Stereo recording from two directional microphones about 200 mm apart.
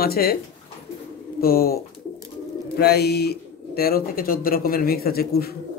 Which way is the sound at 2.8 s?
50° left (ahead or behind).